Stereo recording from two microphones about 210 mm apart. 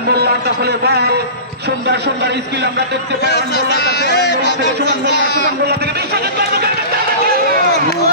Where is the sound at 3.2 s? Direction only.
50° left (ahead or behind).